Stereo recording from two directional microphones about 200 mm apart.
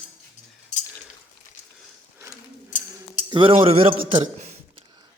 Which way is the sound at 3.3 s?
25° right (ahead or behind).